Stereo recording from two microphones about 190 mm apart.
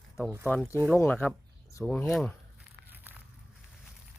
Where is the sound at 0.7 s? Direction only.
10° right (ahead or behind).